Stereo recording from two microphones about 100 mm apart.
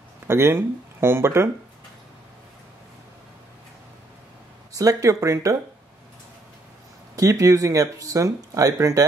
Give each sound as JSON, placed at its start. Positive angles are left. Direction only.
{"t": 0.3, "sound": "speech", "side_deg": -25}
{"t": 4.7, "sound": "speech", "side_deg": -35}
{"t": 7.2, "sound": "speech", "side_deg": -35}